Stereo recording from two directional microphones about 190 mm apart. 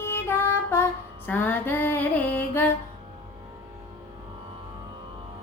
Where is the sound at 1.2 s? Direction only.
10° left (ahead or behind).